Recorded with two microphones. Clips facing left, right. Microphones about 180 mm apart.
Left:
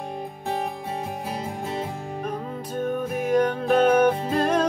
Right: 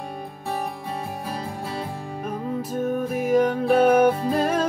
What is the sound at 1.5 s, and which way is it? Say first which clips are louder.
Music: left 1 dB; 20° left (ahead or behind).